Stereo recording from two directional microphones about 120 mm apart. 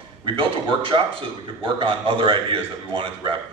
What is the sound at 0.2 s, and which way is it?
A man's voice, 45° right (ahead or behind).